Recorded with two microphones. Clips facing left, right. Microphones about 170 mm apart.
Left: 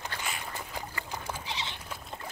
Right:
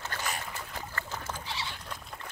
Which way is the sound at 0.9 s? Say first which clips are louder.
Even; 15° left (ahead or behind).